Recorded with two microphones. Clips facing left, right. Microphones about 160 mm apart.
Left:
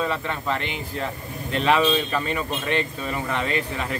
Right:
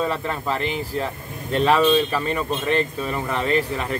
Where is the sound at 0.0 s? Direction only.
5° right (ahead or behind).